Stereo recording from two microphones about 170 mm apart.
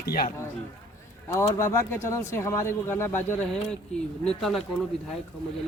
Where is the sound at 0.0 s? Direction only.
60° left (ahead or behind).